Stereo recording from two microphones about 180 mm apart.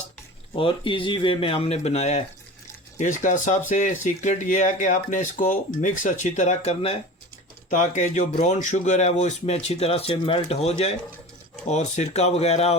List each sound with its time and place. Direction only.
0.5 s speech: 30° left (ahead or behind)